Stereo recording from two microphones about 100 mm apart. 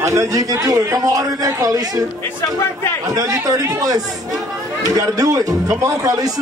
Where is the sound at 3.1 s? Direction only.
35° right (ahead or behind).